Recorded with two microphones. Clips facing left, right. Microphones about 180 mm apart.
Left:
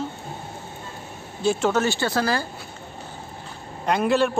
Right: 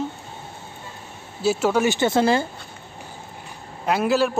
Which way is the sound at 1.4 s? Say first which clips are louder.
Right 1 dB; 5° right (ahead or behind).